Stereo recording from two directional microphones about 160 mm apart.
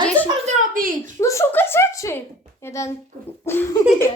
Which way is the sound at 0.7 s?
60° right (ahead or behind).